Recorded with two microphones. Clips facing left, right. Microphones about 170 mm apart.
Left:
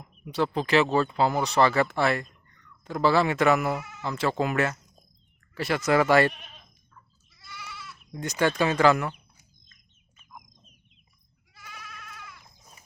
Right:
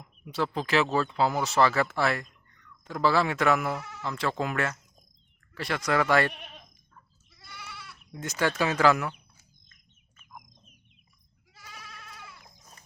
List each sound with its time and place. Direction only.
0.0 s speech: centre (ahead or behind)
6.3 s sheep: 60° right (ahead or behind)
7.3 s goat: 55° right (ahead or behind)
8.2 s speech: centre (ahead or behind)
11.5 s goat: 35° right (ahead or behind)